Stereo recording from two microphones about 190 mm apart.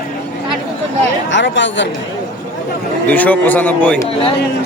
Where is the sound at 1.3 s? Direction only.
70° left (ahead or behind).